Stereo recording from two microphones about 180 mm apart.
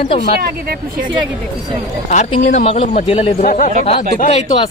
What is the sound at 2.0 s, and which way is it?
A man's voice, 45° left (ahead or behind).